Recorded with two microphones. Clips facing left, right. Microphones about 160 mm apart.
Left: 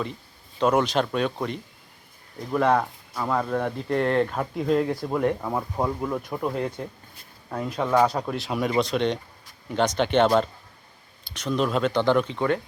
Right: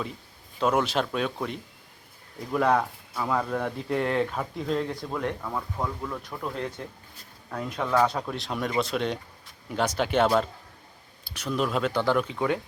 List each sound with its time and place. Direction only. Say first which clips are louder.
0.6 s speech: left 3 dB; 5° right (ahead or behind)
5.4 s speech: left 5 dB; 25° left (ahead or behind)
6.4 s speech: left 5 dB; 10° left (ahead or behind); by 12.5 s 5° right (ahead or behind)